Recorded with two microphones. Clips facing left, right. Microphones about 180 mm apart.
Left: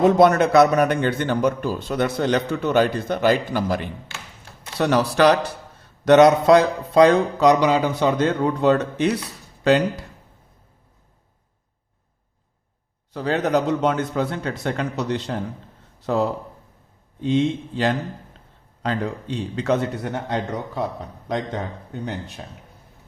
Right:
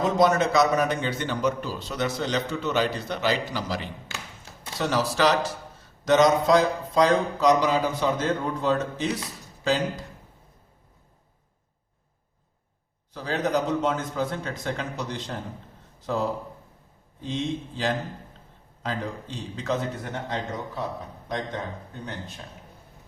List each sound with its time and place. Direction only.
0.0 s a man's voice: 60° left (ahead or behind)
13.1 s a man's voice: 70° left (ahead or behind)